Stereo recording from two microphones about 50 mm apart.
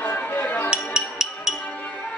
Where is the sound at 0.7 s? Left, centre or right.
Centre.